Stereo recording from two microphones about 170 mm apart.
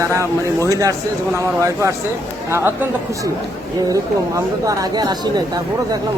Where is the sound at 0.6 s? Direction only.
20° right (ahead or behind).